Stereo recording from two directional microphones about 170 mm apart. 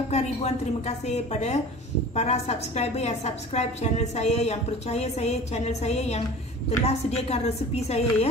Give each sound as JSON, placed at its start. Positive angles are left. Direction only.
{"t": 0.1, "sound": "a woman's voice", "side_deg": 40}